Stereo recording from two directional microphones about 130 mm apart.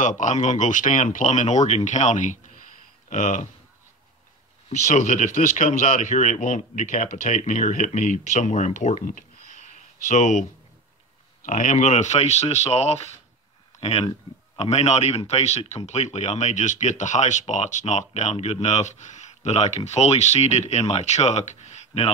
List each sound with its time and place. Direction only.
0.0 s speech: 75° left (ahead or behind)
4.6 s speech: 65° left (ahead or behind)
10.0 s speech: 60° left (ahead or behind)
11.4 s speech: 70° left (ahead or behind)